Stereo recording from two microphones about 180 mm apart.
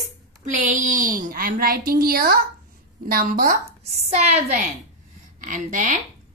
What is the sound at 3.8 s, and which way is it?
A woman's voice, 35° right (ahead or behind).